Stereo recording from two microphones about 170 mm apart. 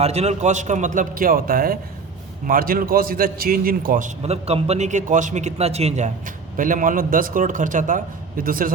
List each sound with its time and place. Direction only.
0.0 s a man's voice: 40° right (ahead or behind); by 4.1 s 55° right (ahead or behind)
4.2 s a man's voice: 35° right (ahead or behind); by 8.7 s 55° right (ahead or behind)